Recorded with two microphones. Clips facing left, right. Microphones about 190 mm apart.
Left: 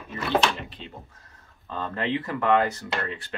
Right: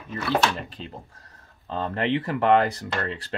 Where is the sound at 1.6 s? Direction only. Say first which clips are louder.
Right 3 dB; 25° right (ahead or behind).